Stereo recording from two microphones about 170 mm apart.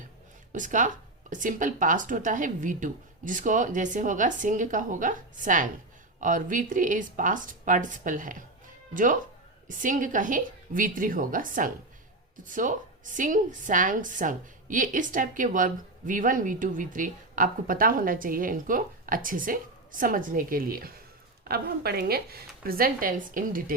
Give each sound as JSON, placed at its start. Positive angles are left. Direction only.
{"t": 0.5, "sound": "a woman's voice", "side_deg": -50}